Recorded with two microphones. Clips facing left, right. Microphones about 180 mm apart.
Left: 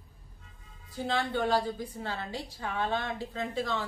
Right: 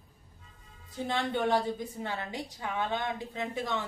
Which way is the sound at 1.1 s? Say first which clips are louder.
Even; 20° right (ahead or behind).